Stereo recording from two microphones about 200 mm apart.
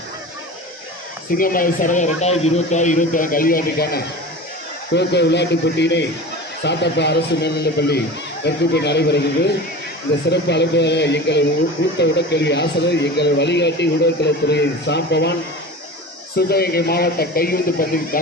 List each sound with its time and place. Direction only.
1.4 s speech: 45° left (ahead or behind)
4.9 s speech: 60° left (ahead or behind)
16.4 s speech: 50° left (ahead or behind)